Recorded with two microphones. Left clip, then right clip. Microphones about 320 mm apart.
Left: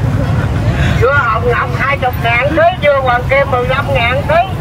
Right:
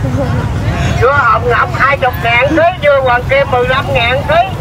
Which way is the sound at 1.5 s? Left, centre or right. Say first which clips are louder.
Right 4 dB; right.